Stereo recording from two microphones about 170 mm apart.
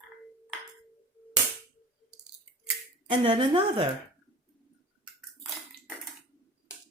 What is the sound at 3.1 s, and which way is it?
Speech, 30° right (ahead or behind).